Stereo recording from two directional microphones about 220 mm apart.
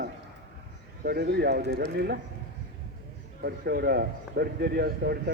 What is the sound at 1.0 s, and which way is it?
Speech, 45° right (ahead or behind).